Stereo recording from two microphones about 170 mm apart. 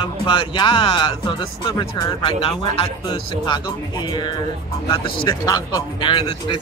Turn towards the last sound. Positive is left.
turn(degrees=30)  # may be behind; listen again after turning